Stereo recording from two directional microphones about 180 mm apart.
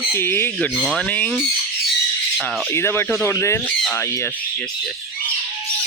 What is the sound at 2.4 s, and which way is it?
Speech, centre (ahead or behind).